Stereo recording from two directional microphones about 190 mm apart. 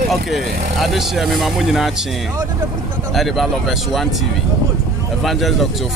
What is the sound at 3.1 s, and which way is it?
Speech, centre (ahead or behind).